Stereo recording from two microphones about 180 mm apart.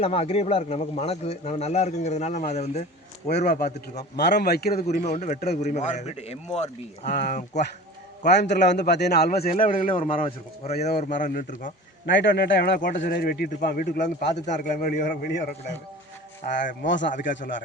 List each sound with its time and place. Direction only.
0.0 s speech: 35° left (ahead or behind)
3.4 s speech: 60° left (ahead or behind)
5.0 s speech: 40° left (ahead or behind)
8.3 s a man's voice: 70° left (ahead or behind); by 9.6 s 55° left (ahead or behind)
9.9 s speech: 30° left (ahead or behind)
10.9 s speech: 50° left (ahead or behind)
12.0 s speech: 85° left; by 14.3 s 60° left (ahead or behind)
14.6 s speech: 50° left (ahead or behind)
16.4 s speech: 50° left (ahead or behind)
16.8 s speech: 85° left
17.1 s speech: 45° left (ahead or behind)